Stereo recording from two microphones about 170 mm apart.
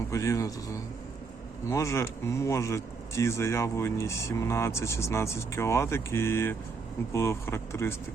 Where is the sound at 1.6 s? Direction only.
15° left (ahead or behind).